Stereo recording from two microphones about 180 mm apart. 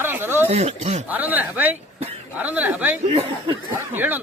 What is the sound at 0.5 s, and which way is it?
Speech, 35° right (ahead or behind).